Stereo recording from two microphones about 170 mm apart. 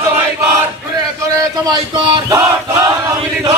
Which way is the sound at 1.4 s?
25° right (ahead or behind).